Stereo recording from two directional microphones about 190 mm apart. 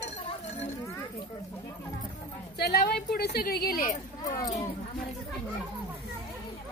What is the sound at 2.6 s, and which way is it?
A woman's voice, 55° left (ahead or behind).